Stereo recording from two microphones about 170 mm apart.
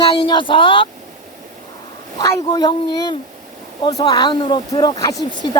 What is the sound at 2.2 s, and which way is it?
Speech, 20° left (ahead or behind).